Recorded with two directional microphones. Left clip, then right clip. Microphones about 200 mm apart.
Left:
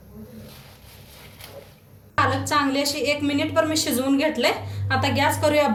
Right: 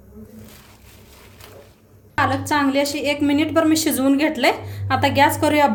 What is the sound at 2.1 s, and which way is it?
A woman's voice, 55° right (ahead or behind).